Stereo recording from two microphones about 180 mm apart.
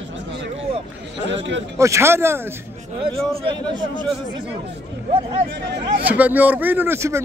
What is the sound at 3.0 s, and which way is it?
A man's voice, 25° right (ahead or behind).